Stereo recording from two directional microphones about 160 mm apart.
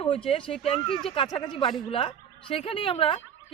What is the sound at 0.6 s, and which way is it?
A woman's voice, 35° left (ahead or behind).